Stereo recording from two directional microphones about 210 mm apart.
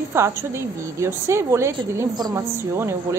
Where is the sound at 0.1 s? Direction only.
10° right (ahead or behind).